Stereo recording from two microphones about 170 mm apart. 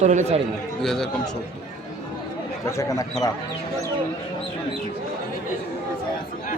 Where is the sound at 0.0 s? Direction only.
45° right (ahead or behind).